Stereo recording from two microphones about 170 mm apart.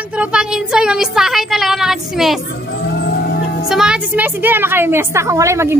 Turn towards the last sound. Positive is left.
turn(degrees=-15)  # may be behind; listen again after turning